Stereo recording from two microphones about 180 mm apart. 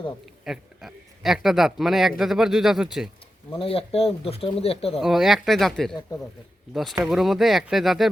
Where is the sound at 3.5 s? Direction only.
30° left (ahead or behind).